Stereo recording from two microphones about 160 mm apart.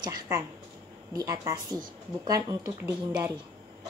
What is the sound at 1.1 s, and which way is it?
A woman's voice, 20° right (ahead or behind).